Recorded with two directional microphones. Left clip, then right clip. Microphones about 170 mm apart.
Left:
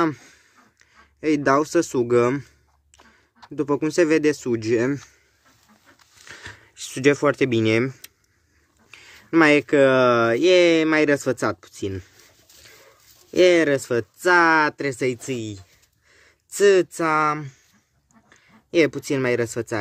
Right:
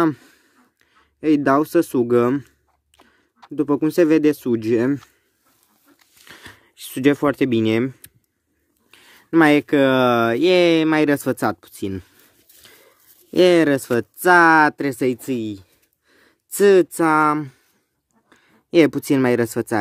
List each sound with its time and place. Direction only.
0.0 s a sound: 40° right (ahead or behind)
1.2 s speech: 40° right (ahead or behind)
6.2 s speech: 35° right (ahead or behind); by 12.1 s 50° right (ahead or behind)
13.3 s speech: 60° right (ahead or behind)